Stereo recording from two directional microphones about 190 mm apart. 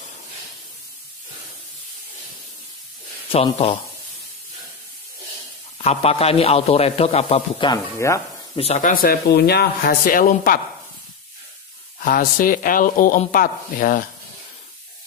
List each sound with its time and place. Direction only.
3.3 s speech: 30° left (ahead or behind)
5.8 s a man's voice: 30° left (ahead or behind)
8.5 s speech: 35° left (ahead or behind)
12.0 s speech: 45° left (ahead or behind)